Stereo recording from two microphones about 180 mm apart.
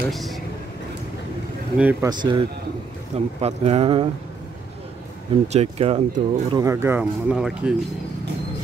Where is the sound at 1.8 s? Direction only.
10° right (ahead or behind).